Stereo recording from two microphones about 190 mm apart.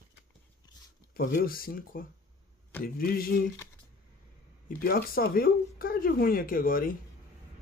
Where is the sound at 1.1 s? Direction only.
50° left (ahead or behind).